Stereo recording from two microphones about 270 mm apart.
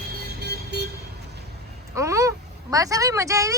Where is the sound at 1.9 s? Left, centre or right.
Centre.